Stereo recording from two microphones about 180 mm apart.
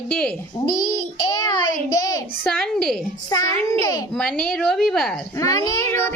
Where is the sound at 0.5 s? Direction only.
25° left (ahead or behind).